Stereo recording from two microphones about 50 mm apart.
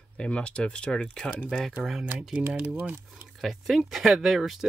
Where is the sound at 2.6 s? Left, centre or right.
Right.